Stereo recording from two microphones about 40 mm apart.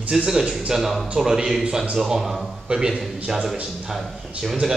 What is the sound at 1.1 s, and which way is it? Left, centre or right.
Speech, centre.